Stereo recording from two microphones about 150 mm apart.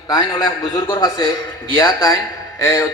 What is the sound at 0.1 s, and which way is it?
A man's voice, 30° left (ahead or behind).